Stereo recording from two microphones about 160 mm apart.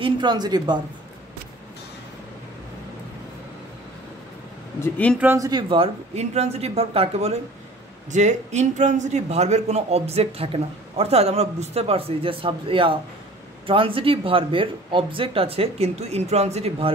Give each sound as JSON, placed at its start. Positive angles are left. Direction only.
{"t": 0.0, "sound": "speech", "side_deg": -25}
{"t": 4.7, "sound": "speech", "side_deg": 15}
{"t": 5.2, "sound": "speech", "side_deg": -15}
{"t": 5.5, "sound": "a man's voice", "side_deg": -30}